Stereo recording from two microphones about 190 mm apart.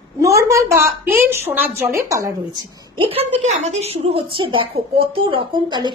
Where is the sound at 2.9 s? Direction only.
30° right (ahead or behind).